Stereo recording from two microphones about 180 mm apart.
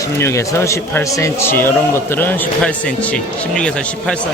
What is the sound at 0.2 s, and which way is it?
A man's voice, 15° left (ahead or behind).